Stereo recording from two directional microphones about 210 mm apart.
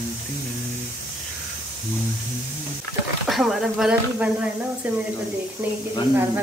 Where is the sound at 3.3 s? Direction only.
Centre (ahead or behind).